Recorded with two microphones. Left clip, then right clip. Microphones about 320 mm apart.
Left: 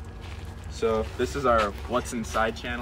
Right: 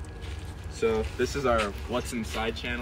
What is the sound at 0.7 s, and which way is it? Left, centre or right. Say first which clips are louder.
Speech: left 1 dB; centre.